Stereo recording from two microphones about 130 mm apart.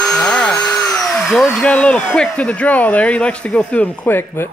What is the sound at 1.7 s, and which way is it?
Speech, 10° left (ahead or behind).